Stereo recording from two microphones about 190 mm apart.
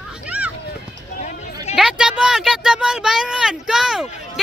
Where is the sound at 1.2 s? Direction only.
35° left (ahead or behind).